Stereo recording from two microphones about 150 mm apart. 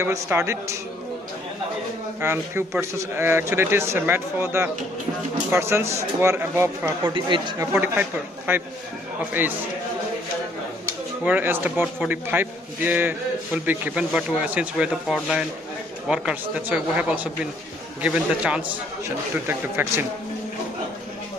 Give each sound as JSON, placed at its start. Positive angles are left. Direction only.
{"t": 0.0, "sound": "a man's voice", "side_deg": -20}
{"t": 2.2, "sound": "speech", "side_deg": -15}
{"t": 7.2, "sound": "speech", "side_deg": -30}
{"t": 7.7, "sound": "speech", "side_deg": -10}
{"t": 11.2, "sound": "speech", "side_deg": -15}
{"t": 15.1, "sound": "speech", "side_deg": 5}
{"t": 16.1, "sound": "speech", "side_deg": -5}